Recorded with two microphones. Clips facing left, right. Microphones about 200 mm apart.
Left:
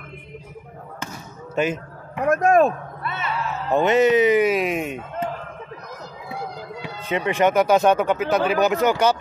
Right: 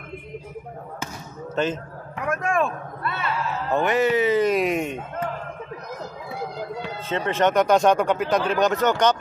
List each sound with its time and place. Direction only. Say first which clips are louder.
1.5 s speech: left 2 dB; 10° left (ahead or behind)
2.2 s a man's voice: left 7 dB; 40° left (ahead or behind)
3.0 s speech: right 2 dB; 20° left (ahead or behind)
4.5 s speech: even; centre (ahead or behind)
7.1 s speech: left 2 dB; 15° left (ahead or behind)